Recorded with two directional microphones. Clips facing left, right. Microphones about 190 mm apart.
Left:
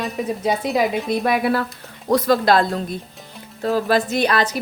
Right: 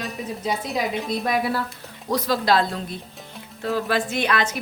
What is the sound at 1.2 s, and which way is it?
Speech, 65° left (ahead or behind).